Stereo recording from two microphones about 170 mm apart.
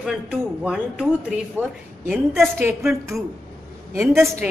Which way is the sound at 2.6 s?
15° right (ahead or behind).